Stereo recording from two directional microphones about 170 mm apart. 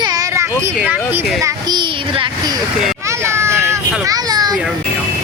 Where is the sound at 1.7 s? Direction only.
25° right (ahead or behind).